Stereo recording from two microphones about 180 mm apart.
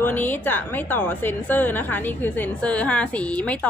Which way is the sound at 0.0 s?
10° left (ahead or behind).